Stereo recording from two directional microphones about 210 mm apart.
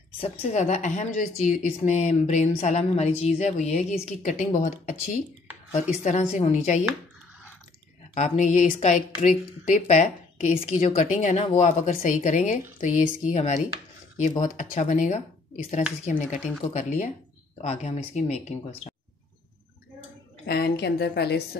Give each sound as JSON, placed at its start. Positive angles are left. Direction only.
{"t": 0.2, "sound": "a woman's voice", "side_deg": 30}
{"t": 8.1, "sound": "a woman's voice", "side_deg": 35}
{"t": 20.4, "sound": "a woman's voice", "side_deg": 50}